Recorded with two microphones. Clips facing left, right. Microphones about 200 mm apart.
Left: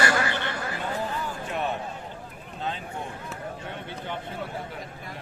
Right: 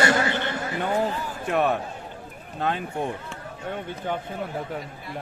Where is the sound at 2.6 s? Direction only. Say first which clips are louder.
Right 6 dB; 60° right (ahead or behind).